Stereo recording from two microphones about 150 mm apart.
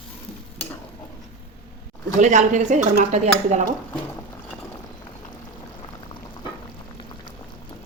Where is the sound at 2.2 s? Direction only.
55° right (ahead or behind).